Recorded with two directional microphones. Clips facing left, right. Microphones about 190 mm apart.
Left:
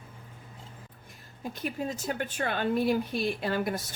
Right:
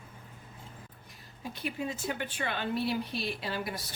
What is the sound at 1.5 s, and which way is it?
A woman's voice, 45° left (ahead or behind).